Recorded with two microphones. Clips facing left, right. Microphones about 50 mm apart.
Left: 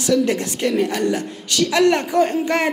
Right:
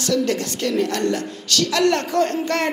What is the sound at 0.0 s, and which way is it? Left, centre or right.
A woman's voice, centre.